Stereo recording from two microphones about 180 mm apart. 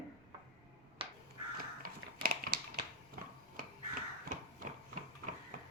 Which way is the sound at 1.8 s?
50° right (ahead or behind).